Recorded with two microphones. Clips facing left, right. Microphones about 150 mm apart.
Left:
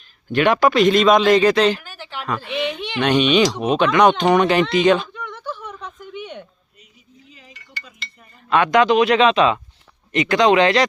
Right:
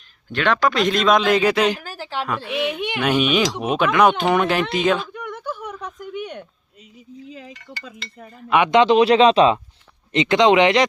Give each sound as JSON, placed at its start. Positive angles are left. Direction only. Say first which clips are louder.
{"t": 0.3, "sound": "speech", "louder": "left 4 dB", "side_deg": 10}
{"t": 0.8, "sound": "speech", "louder": "left 5 dB", "side_deg": 0}
{"t": 1.8, "sound": "a sound", "louder": "right 5 dB", "side_deg": -35}
{"t": 2.2, "sound": "speech", "louder": "left 1 dB", "side_deg": -5}
{"t": 8.4, "sound": "speech", "louder": "even", "side_deg": -15}
{"t": 10.1, "sound": "speech", "louder": "even", "side_deg": -25}